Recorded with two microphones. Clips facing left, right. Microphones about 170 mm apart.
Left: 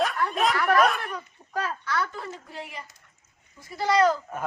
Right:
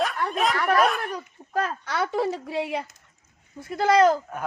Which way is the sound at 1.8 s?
70° right (ahead or behind).